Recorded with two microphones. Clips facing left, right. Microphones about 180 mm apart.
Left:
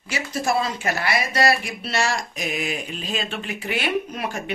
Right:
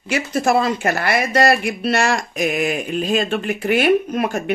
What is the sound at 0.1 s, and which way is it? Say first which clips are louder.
Speech: right 6 dB; 55° right (ahead or behind).